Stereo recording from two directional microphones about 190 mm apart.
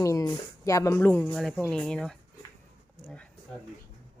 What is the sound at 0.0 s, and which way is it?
Speech, 15° left (ahead or behind).